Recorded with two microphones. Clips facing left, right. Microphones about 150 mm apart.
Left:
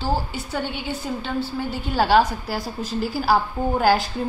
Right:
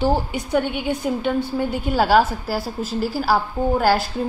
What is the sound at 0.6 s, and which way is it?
Speech, 55° right (ahead or behind).